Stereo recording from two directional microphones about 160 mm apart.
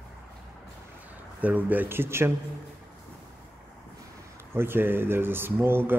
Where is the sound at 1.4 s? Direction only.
10° right (ahead or behind).